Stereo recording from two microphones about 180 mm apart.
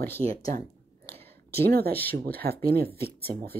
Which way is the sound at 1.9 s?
10° left (ahead or behind).